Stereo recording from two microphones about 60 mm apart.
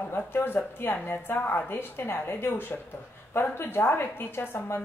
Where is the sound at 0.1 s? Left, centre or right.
Left.